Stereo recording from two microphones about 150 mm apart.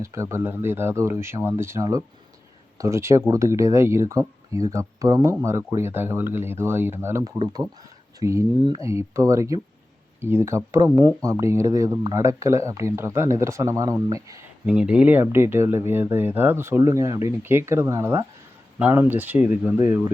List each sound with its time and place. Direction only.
0.0 s speech: 20° right (ahead or behind)
8.6 s speech: 30° right (ahead or behind)
8.9 s speech: 20° right (ahead or behind)
14.7 s speech: 10° right (ahead or behind)